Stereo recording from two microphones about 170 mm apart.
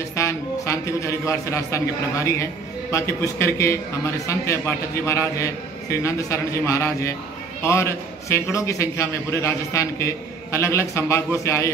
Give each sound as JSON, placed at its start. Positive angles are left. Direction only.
{"t": 0.1, "sound": "a man's voice", "side_deg": 15}